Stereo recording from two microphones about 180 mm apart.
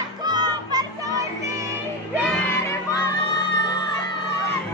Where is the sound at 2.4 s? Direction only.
15° left (ahead or behind).